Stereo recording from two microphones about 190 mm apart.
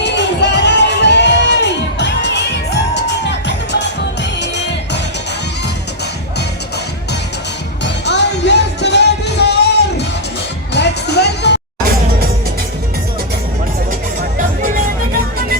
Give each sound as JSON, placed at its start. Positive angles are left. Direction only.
{"t": 0.0, "sound": "music", "side_deg": 65}
{"t": 7.9, "sound": "music", "side_deg": 65}